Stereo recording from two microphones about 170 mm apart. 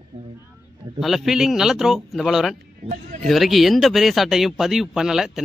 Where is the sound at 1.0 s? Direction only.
Centre (ahead or behind).